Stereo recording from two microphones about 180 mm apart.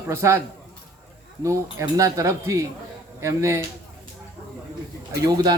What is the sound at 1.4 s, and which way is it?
A man's voice, 15° right (ahead or behind).